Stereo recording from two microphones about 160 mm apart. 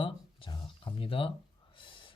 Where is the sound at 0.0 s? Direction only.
30° left (ahead or behind).